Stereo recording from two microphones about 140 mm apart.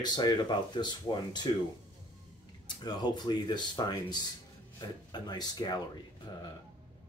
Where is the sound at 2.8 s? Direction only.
30° left (ahead or behind).